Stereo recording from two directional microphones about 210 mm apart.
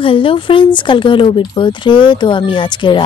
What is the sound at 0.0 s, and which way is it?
Speech, 25° left (ahead or behind).